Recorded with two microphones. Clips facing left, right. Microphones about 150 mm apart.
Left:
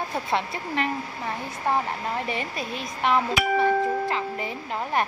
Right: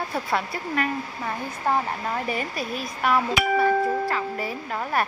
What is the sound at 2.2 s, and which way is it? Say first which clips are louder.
Speech: right 2 dB; 25° left (ahead or behind).